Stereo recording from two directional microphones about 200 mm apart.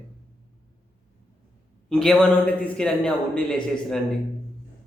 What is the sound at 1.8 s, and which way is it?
Speech, centre (ahead or behind).